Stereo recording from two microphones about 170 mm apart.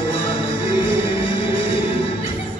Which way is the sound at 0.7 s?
30° left (ahead or behind).